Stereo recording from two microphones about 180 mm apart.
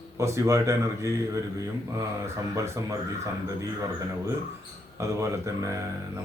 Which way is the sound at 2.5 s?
15° right (ahead or behind).